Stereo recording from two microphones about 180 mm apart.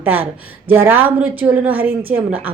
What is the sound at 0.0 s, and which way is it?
A woman's voice, 10° right (ahead or behind).